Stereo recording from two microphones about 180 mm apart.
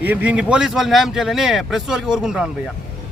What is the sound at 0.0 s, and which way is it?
Speech, 10° right (ahead or behind).